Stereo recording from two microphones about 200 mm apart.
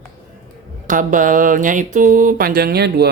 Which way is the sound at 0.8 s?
40° right (ahead or behind).